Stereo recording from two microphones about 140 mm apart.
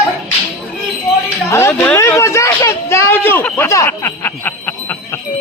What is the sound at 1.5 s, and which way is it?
Speech, 20° left (ahead or behind).